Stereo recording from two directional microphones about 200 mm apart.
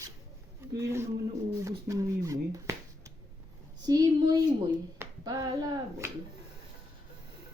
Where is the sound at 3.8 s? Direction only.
20° right (ahead or behind).